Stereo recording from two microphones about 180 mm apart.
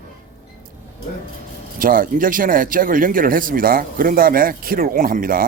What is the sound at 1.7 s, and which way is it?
Speech, 50° right (ahead or behind).